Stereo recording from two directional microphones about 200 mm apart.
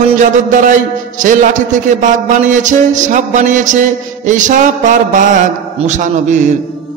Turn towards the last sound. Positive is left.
turn(degrees=-40)  # may be behind; listen again after turning